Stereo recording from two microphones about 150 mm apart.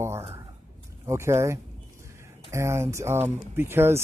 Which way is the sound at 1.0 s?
20° right (ahead or behind).